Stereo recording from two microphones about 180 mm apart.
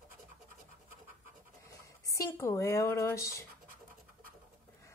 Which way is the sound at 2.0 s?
15° left (ahead or behind).